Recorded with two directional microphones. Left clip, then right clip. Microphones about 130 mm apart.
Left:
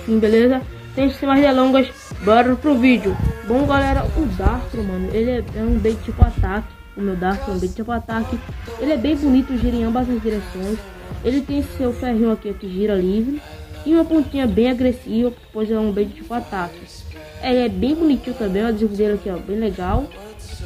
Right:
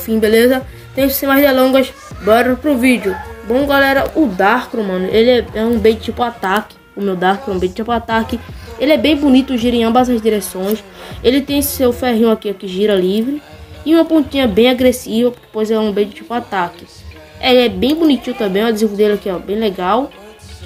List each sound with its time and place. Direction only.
0.1 s speech: 25° right (ahead or behind)
7.3 s speech: centre (ahead or behind)
7.6 s speech: 20° right (ahead or behind)